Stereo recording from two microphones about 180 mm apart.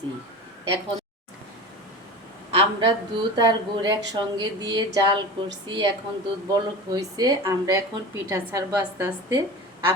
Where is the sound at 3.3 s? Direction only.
25° right (ahead or behind).